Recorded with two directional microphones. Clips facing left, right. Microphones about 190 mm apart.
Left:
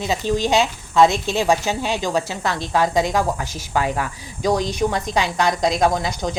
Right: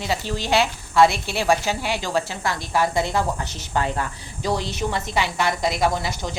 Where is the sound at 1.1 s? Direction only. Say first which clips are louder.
Left 6 dB; 10° right (ahead or behind).